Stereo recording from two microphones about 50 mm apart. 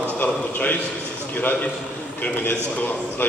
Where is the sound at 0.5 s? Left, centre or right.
Left.